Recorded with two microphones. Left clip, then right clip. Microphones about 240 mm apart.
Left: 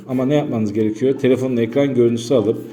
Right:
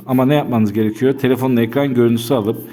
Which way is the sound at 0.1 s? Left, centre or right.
Right.